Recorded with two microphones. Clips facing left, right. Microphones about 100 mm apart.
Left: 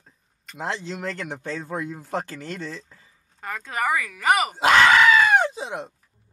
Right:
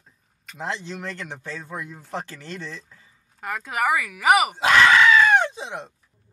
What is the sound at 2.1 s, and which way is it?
Speech, 50° left (ahead or behind).